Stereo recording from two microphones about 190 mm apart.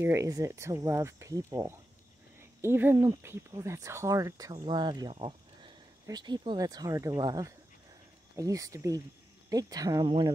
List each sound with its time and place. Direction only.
0.0 s speech: 15° right (ahead or behind)